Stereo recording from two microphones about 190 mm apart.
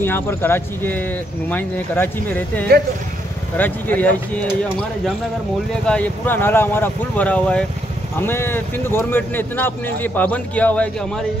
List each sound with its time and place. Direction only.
0.0 s speech: 10° left (ahead or behind)
2.7 s speech: 55° right (ahead or behind)
3.5 s speech: 10° left (ahead or behind)
5.9 s speech: 10° left (ahead or behind)